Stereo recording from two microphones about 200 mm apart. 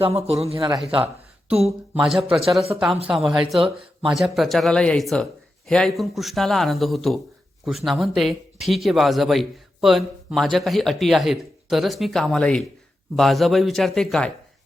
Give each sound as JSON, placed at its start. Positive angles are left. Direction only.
{"t": 0.0, "sound": "a man's voice", "side_deg": -30}
{"t": 1.5, "sound": "speech", "side_deg": -5}